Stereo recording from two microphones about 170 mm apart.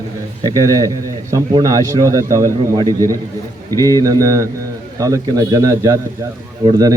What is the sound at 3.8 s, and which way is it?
Speech, 15° left (ahead or behind).